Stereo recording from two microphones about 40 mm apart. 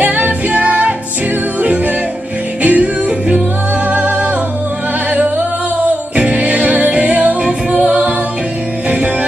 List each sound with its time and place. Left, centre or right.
0.0 s music: right
3.1 s music: right
3.8 s music: right
6.1 s music: right